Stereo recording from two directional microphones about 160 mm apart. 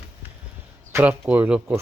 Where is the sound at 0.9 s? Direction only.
10° right (ahead or behind).